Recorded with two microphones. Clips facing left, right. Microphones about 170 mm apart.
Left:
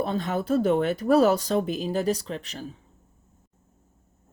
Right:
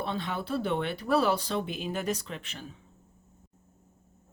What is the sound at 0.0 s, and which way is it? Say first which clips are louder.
Speech: left 6 dB; 45° left (ahead or behind).